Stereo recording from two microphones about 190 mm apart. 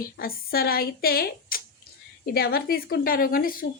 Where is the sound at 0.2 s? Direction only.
50° left (ahead or behind).